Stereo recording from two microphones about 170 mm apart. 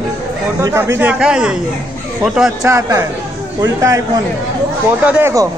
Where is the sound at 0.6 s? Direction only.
15° right (ahead or behind).